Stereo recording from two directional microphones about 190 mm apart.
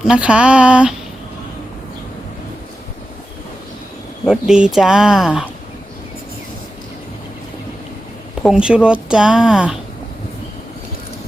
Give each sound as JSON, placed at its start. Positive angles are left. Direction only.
{"t": 0.0, "sound": "speech", "side_deg": -5}
{"t": 4.3, "sound": "speech", "side_deg": -5}
{"t": 8.4, "sound": "speech", "side_deg": -5}